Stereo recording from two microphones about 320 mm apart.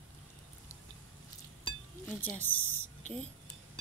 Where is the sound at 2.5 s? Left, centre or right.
Left.